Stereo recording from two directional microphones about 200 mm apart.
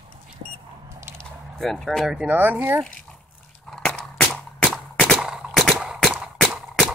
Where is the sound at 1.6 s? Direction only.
Centre (ahead or behind).